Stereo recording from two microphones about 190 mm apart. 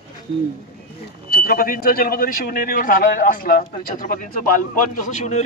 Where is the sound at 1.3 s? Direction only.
50° left (ahead or behind).